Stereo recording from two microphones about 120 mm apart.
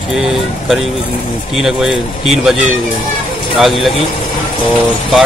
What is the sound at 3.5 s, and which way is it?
Speech, centre (ahead or behind).